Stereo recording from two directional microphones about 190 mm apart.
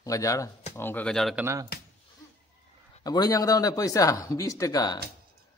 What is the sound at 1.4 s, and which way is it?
Speech, 15° right (ahead or behind).